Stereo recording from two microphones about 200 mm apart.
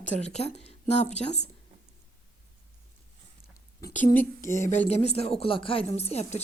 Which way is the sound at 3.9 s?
40° left (ahead or behind).